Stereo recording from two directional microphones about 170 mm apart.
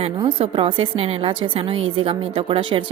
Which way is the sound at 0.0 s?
30° right (ahead or behind).